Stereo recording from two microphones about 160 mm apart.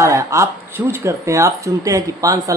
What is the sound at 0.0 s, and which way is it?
Speech, 20° right (ahead or behind).